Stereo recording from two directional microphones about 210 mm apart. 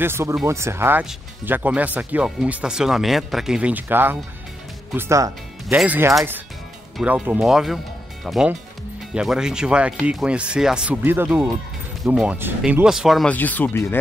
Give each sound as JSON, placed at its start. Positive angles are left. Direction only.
{"t": 0.0, "sound": "speech", "side_deg": -10}